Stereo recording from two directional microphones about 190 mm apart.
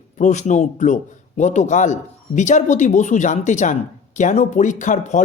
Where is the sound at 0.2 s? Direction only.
40° left (ahead or behind).